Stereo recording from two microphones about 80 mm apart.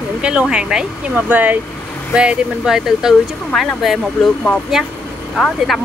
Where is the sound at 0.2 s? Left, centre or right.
Centre.